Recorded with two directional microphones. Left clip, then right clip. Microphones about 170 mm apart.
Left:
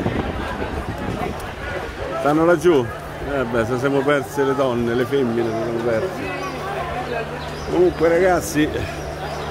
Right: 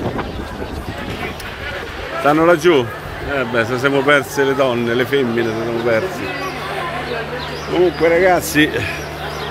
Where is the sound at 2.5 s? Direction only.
20° left (ahead or behind).